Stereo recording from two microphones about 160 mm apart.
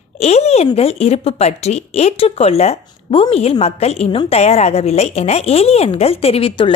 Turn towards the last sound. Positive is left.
turn(degrees=35)  # may be behind; listen again after turning